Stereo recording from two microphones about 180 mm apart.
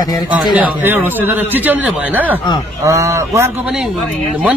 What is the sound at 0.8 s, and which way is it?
A man's voice, 10° right (ahead or behind).